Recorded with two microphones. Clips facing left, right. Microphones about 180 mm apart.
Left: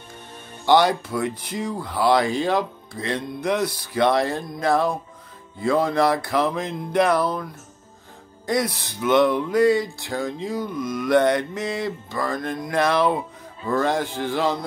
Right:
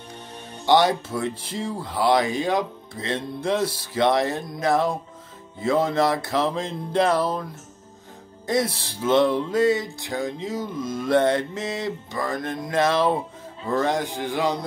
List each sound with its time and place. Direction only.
0.7 s music: 20° right (ahead or behind)
8.5 s music: 25° right (ahead or behind)
13.7 s speech: 20° right (ahead or behind)